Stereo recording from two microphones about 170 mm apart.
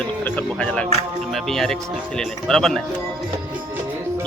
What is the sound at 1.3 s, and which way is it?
Speech, centre (ahead or behind).